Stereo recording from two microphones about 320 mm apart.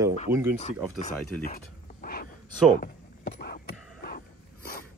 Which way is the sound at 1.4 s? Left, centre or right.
Left.